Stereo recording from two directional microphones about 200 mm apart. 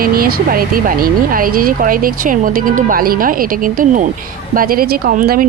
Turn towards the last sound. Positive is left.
turn(degrees=-40)  # may be behind; listen again after turning